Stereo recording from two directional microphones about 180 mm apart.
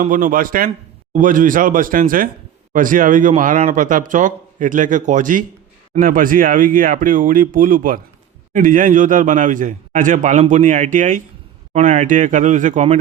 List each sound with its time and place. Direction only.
0.0 s a man's voice: 50° right (ahead or behind)